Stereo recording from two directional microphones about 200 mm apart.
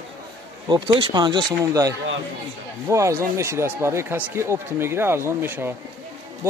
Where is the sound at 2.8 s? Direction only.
15° right (ahead or behind).